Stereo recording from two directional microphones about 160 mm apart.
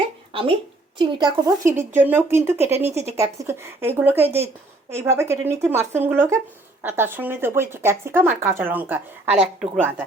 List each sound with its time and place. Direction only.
0.9 s a woman's voice: 30° right (ahead or behind)
1.6 s speech: 15° right (ahead or behind)